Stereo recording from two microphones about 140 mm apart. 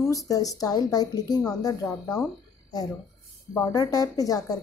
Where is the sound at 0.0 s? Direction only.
25° left (ahead or behind).